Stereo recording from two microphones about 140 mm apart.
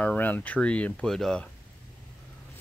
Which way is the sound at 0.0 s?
10° left (ahead or behind).